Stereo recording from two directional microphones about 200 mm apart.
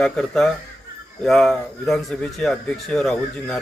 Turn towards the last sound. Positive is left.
turn(degrees=5)  # may be behind; listen again after turning